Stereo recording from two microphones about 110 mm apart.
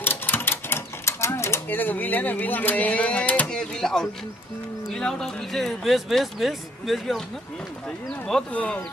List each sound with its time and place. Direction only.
0.0 s typewriter: 20° left (ahead or behind)
4.8 s speech: 5° left (ahead or behind)
8.3 s speech: 10° left (ahead or behind)